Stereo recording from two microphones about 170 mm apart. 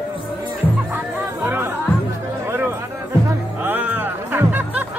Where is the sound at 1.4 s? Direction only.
10° right (ahead or behind).